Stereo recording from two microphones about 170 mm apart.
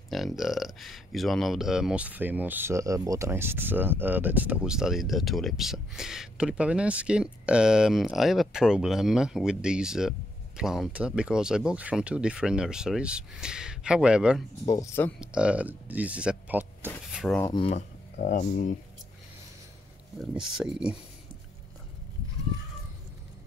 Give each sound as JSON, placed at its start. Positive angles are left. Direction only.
{"t": 0.1, "sound": "speech", "side_deg": 0}
{"t": 14.7, "sound": "speech", "side_deg": 20}
{"t": 15.1, "sound": "speech", "side_deg": -5}
{"t": 17.1, "sound": "a sound", "side_deg": 0}
{"t": 17.5, "sound": "speech", "side_deg": 35}
{"t": 20.3, "sound": "speech", "side_deg": -5}